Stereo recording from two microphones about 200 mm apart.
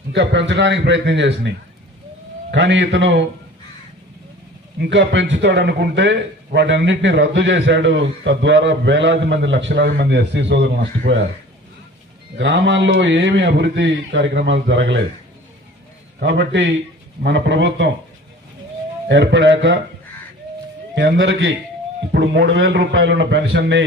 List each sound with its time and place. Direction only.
0.1 s a man's voice: 65° right (ahead or behind)
4.9 s a man's voice: 65° right (ahead or behind)
12.4 s a man's voice: 60° right (ahead or behind)
16.2 s a man's voice: 60° right (ahead or behind)
19.0 s a man's voice: 60° right (ahead or behind)
20.9 s a man's voice: 65° right (ahead or behind)